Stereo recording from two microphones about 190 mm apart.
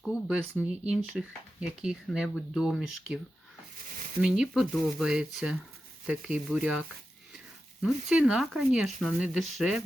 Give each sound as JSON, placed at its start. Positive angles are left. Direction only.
{"t": 0.0, "sound": "speech", "side_deg": -5}
{"t": 4.2, "sound": "speech", "side_deg": -5}